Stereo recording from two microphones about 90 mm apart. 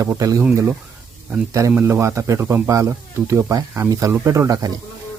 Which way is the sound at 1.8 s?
30° right (ahead or behind).